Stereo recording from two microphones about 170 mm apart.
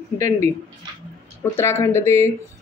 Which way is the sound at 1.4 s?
15° left (ahead or behind).